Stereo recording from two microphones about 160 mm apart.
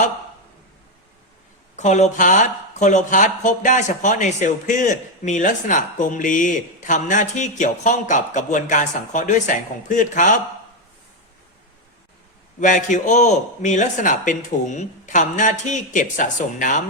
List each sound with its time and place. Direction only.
1.7 s speech: 45° left (ahead or behind)
12.5 s speech: 50° left (ahead or behind)